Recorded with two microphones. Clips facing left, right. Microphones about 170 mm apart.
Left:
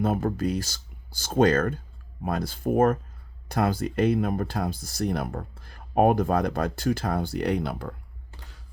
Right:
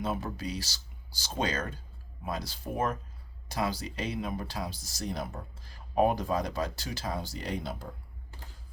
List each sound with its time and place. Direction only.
0.0 s speech: 50° left (ahead or behind)